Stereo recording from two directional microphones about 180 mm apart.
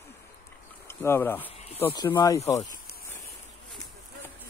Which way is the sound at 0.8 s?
15° left (ahead or behind).